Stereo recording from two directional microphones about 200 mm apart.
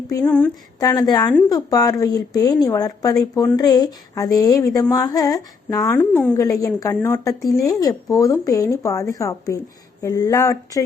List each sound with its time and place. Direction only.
0.1 s a woman's voice: 10° left (ahead or behind)
0.9 s a woman's voice: 20° left (ahead or behind)